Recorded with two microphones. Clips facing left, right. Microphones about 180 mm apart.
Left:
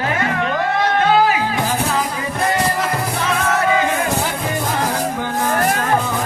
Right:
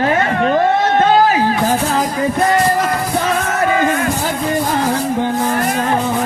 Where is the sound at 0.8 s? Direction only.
40° right (ahead or behind).